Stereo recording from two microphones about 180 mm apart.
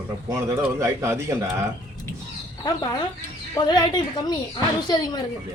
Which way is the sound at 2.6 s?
20° left (ahead or behind).